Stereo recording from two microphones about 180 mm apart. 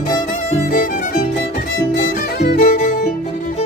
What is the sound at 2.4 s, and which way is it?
Music, 55° left (ahead or behind).